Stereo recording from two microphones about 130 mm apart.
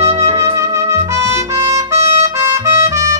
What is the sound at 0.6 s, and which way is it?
Trumpet, 20° right (ahead or behind).